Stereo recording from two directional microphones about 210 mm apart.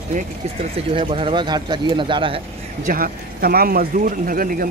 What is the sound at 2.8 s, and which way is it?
Speech, 40° right (ahead or behind).